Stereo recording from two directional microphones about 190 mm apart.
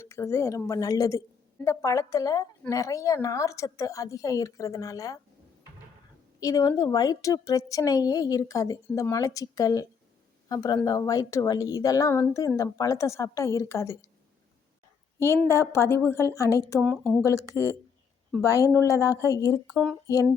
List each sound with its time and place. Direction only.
0.0 s speech: 15° left (ahead or behind)
6.4 s a woman's voice: 20° left (ahead or behind)
15.7 s speech: 15° left (ahead or behind)
16.8 s speech: centre (ahead or behind)
17.2 s speech: 15° left (ahead or behind)
19.6 s speech: centre (ahead or behind)